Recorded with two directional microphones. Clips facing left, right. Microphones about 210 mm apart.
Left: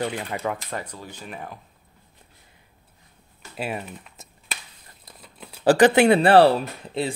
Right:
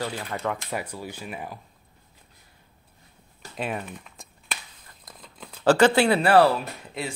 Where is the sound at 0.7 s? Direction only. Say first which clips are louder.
Right 2 dB; 10° right (ahead or behind).